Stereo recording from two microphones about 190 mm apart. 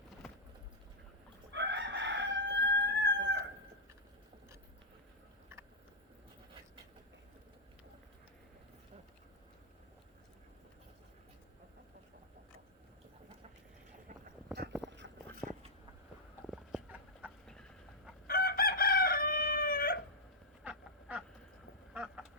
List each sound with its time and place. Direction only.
0.2 s vehicle: centre (ahead or behind)
1.5 s crowing: 65° right (ahead or behind)
14.8 s a sound: 70° right (ahead or behind)
15.4 s a sound: 10° left (ahead or behind)
16.5 s chicken: 5° right (ahead or behind)
18.3 s chicken: 50° left (ahead or behind)
20.7 s duck: 5° right (ahead or behind)
21.9 s vehicle: 5° right (ahead or behind)